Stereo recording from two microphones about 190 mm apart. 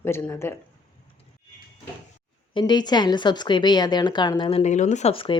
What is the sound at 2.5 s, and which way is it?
A woman's voice, 25° left (ahead or behind).